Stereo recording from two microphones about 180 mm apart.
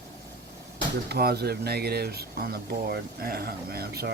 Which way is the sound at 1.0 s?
60° right (ahead or behind).